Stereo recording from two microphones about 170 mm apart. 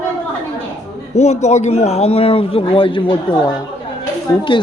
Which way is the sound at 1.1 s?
40° left (ahead or behind).